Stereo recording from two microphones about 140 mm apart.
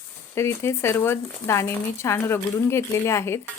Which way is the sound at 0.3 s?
20° left (ahead or behind).